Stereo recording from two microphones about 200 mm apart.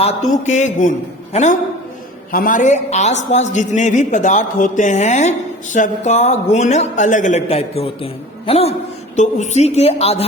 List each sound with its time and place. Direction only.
0.0 s a woman's voice: 35° left (ahead or behind)